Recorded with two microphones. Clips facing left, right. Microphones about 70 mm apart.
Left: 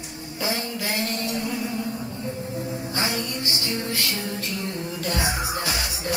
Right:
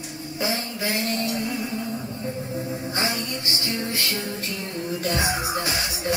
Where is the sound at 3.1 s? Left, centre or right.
Right.